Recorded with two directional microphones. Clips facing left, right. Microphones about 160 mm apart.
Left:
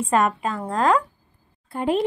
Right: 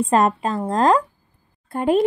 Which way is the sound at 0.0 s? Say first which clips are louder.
Right 3 dB; 30° right (ahead or behind).